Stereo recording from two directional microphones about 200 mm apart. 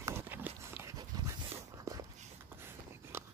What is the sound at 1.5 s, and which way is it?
Walk, 15° right (ahead or behind).